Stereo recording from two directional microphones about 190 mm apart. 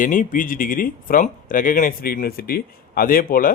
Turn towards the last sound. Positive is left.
turn(degrees=50)  # may be behind; listen again after turning